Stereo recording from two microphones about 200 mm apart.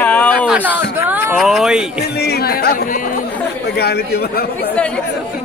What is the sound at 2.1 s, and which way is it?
Speech, 50° left (ahead or behind).